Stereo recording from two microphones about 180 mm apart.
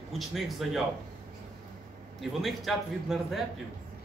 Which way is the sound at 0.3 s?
Centre (ahead or behind).